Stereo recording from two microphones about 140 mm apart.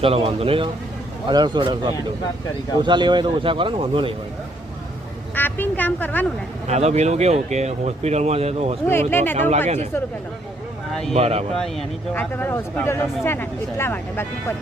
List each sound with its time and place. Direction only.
0.0 s speech: 40° right (ahead or behind)
5.3 s speech: 15° left (ahead or behind)
6.7 s speech: 50° right (ahead or behind)
8.9 s speech: 15° left (ahead or behind)
9.3 s speech: 55° right (ahead or behind)
11.1 s speech: 45° right (ahead or behind)
11.5 s speech: centre (ahead or behind)
12.3 s speech: 15° left (ahead or behind)